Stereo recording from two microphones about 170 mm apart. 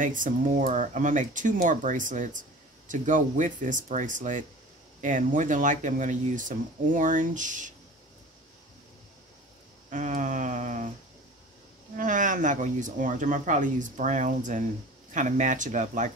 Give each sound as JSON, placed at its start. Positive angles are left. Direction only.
{"t": 0.0, "sound": "speech", "side_deg": -50}
{"t": 9.8, "sound": "speech", "side_deg": -45}
{"t": 12.0, "sound": "speech", "side_deg": -50}